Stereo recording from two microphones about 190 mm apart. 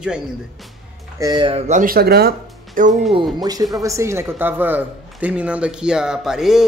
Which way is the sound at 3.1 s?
20° right (ahead or behind).